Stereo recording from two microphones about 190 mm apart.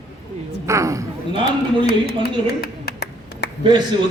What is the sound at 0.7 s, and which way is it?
Speech, 15° right (ahead or behind).